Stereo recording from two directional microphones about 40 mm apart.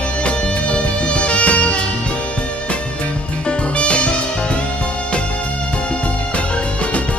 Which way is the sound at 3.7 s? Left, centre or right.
Left.